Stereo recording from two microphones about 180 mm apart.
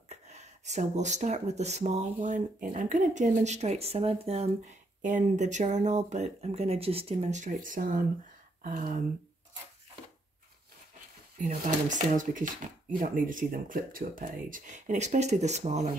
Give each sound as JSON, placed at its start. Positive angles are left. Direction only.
{"t": 0.1, "sound": "speech", "side_deg": -40}
{"t": 11.3, "sound": "speech", "side_deg": -45}